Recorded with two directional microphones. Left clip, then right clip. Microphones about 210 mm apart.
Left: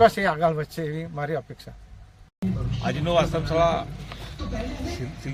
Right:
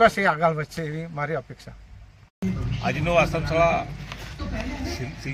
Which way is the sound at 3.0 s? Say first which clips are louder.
Right 1 dB; 15° left (ahead or behind).